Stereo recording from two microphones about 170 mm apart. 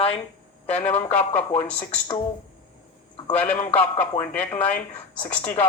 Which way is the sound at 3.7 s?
10° left (ahead or behind).